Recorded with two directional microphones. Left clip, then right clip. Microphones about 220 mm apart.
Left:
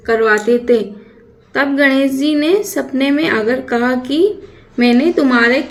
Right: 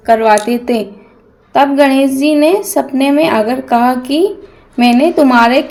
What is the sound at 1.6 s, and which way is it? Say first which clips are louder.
Speech: right 4 dB; 70° right (ahead or behind).